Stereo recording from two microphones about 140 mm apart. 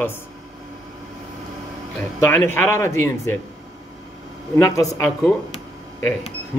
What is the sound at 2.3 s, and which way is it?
A man's voice, 15° left (ahead or behind).